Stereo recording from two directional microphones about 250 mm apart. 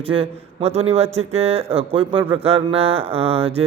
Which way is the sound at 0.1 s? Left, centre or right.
Right.